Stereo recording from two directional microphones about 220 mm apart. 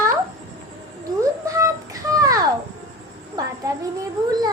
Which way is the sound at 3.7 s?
15° right (ahead or behind).